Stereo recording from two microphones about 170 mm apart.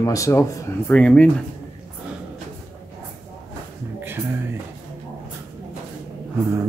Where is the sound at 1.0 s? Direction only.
5° left (ahead or behind).